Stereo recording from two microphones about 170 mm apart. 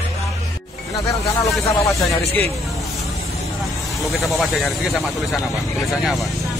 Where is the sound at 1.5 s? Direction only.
Centre (ahead or behind).